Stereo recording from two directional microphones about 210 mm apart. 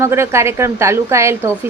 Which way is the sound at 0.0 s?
10° right (ahead or behind).